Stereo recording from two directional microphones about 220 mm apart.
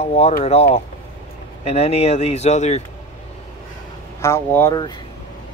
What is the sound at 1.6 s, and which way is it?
Speech, 30° left (ahead or behind).